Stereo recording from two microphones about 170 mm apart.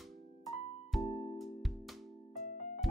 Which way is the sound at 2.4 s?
50° left (ahead or behind).